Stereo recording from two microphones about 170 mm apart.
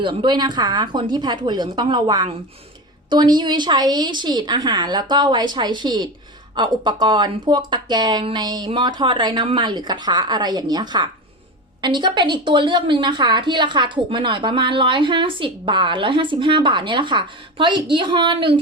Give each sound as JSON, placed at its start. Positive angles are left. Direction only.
{"t": 0.0, "sound": "a woman's voice", "side_deg": -30}